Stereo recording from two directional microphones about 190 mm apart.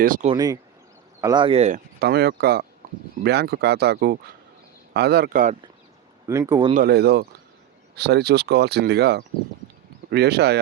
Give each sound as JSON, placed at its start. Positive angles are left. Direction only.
{"t": 0.0, "sound": "speech", "side_deg": -45}
{"t": 0.3, "sound": "speech", "side_deg": -20}
{"t": 2.0, "sound": "speech", "side_deg": -55}
{"t": 6.2, "sound": "speech", "side_deg": -15}
{"t": 6.7, "sound": "speech", "side_deg": -55}